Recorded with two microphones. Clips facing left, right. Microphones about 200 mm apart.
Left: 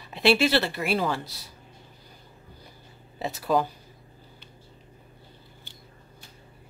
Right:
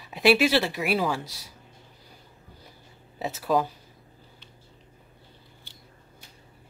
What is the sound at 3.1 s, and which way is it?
Speech, 5° right (ahead or behind).